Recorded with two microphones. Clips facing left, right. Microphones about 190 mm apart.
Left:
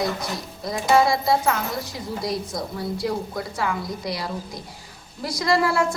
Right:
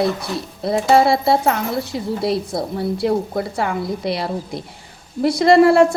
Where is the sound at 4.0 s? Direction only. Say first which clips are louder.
Right 7 dB; 60° right (ahead or behind).